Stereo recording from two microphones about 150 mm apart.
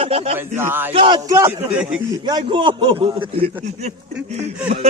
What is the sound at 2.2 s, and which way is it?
Speech, 30° right (ahead or behind).